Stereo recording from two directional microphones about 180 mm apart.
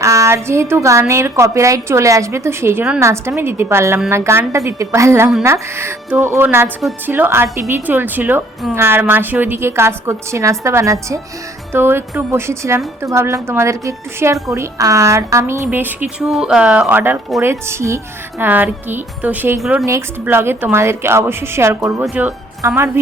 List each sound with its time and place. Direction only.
0.0 s a woman's voice: 15° right (ahead or behind)